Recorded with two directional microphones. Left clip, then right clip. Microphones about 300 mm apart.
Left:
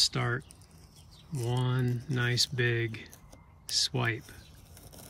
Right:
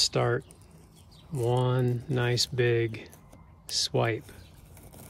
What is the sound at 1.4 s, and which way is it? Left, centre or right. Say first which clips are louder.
Speech: right 7 dB; centre.